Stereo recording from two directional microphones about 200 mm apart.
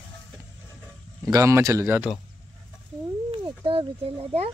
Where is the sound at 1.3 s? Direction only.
15° right (ahead or behind).